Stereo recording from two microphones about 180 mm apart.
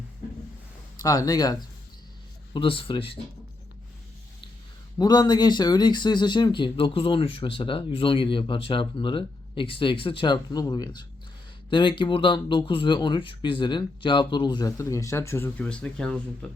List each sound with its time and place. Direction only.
0.9 s speech: 20° left (ahead or behind)
4.9 s speech: 25° left (ahead or behind); by 16.5 s 5° left (ahead or behind)